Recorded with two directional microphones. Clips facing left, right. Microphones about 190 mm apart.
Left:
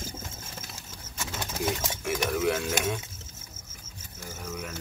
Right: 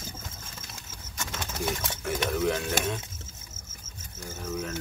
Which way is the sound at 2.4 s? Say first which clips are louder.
Even; 10° left (ahead or behind).